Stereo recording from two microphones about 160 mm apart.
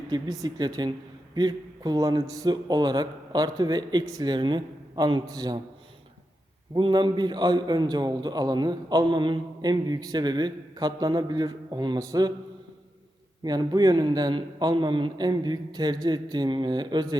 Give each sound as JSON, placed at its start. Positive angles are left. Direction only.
{"t": 0.1, "sound": "a man's voice", "side_deg": -20}
{"t": 6.7, "sound": "a man's voice", "side_deg": -30}
{"t": 13.4, "sound": "a man's voice", "side_deg": -25}